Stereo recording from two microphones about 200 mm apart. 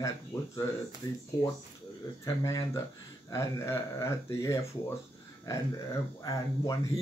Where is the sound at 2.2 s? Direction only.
15° left (ahead or behind).